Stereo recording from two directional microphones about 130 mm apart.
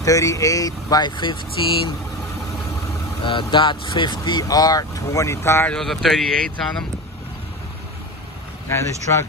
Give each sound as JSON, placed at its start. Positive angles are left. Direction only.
{"t": 0.0, "sound": "speech", "side_deg": 25}
{"t": 3.3, "sound": "speech", "side_deg": 40}
{"t": 5.7, "sound": "speech", "side_deg": 0}
{"t": 8.6, "sound": "speech", "side_deg": 20}